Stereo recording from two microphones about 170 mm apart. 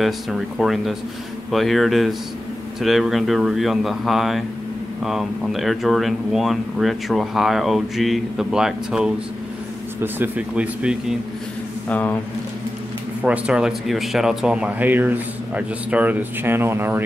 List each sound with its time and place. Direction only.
0.0 s speech: centre (ahead or behind)
11.9 s speech: 10° left (ahead or behind)
13.2 s speech: 5° right (ahead or behind)